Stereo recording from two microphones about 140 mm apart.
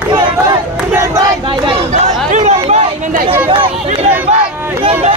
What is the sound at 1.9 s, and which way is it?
Chatter, 55° right (ahead or behind).